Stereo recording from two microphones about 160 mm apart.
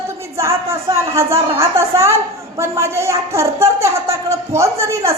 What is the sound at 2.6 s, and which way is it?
A woman's voice, 15° right (ahead or behind).